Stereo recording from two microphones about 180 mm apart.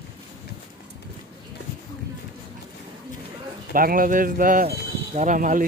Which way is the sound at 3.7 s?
50° right (ahead or behind).